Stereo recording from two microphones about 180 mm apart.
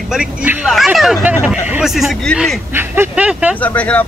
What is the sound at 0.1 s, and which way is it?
Speech, 5° right (ahead or behind).